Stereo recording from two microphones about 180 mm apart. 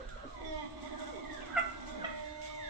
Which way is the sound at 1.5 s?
Centre (ahead or behind).